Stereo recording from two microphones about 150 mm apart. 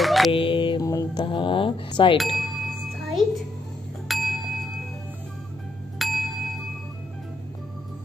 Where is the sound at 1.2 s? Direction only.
35° left (ahead or behind).